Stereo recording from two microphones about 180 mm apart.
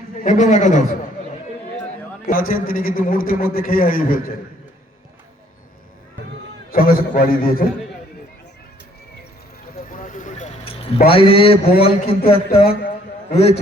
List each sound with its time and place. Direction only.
0.2 s a man's voice: 45° left (ahead or behind)
2.3 s a man's voice: 55° left (ahead or behind)
6.7 s a man's voice: 55° left (ahead or behind)
9.9 s vehicle: 45° left (ahead or behind)
11.1 s a man's voice: 30° left (ahead or behind)